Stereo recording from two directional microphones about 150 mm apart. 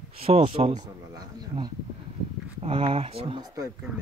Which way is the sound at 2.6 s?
35° right (ahead or behind).